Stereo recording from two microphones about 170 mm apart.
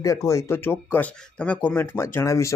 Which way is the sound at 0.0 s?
20° left (ahead or behind).